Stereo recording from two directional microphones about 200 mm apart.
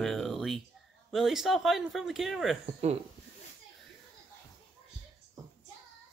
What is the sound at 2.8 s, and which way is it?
Speech, 35° right (ahead or behind).